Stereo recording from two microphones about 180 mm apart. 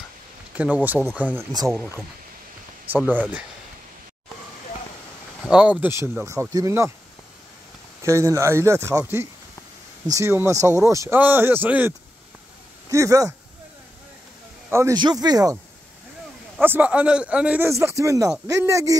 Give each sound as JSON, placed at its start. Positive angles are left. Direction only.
{"t": 0.6, "sound": "a man's voice", "side_deg": -5}
{"t": 1.5, "sound": "speech", "side_deg": -20}
{"t": 2.9, "sound": "a man's voice", "side_deg": -10}
{"t": 5.5, "sound": "a man's voice", "side_deg": -5}
{"t": 8.0, "sound": "a man's voice", "side_deg": -15}
{"t": 12.9, "sound": "a man's voice", "side_deg": -20}
{"t": 14.7, "sound": "speech", "side_deg": -15}
{"t": 16.6, "sound": "a man's voice", "side_deg": -10}